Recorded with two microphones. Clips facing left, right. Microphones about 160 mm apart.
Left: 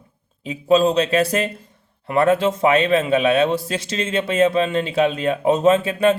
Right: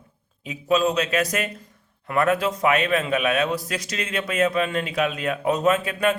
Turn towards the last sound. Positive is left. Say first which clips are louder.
# left 5 dB
turn(degrees=25)  # may be behind; listen again after turning